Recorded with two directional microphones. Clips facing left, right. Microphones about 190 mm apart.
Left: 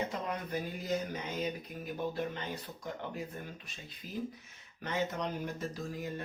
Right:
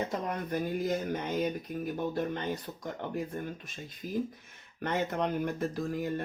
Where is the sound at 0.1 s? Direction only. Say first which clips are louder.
Right 4 dB; 50° right (ahead or behind).